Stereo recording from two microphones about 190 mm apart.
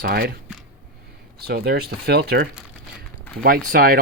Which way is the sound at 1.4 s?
55° right (ahead or behind).